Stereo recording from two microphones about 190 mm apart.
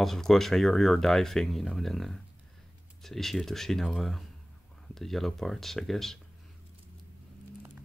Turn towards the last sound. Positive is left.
turn(degrees=0)  # may be behind; listen again after turning